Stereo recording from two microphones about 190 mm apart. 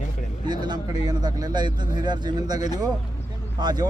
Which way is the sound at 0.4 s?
20° right (ahead or behind).